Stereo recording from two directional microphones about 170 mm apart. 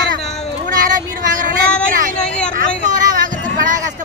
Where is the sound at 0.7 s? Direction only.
50° right (ahead or behind).